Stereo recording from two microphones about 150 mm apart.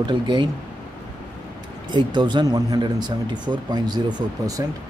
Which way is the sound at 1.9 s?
30° right (ahead or behind).